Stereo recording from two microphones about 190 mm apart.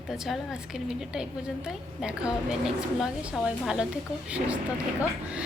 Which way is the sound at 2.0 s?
5° right (ahead or behind).